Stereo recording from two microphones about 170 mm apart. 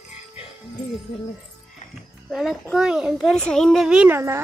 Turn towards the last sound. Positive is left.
turn(degrees=-15)  # may be behind; listen again after turning